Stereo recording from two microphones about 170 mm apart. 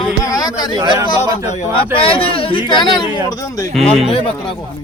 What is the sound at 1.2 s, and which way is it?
Speech, 40° left (ahead or behind).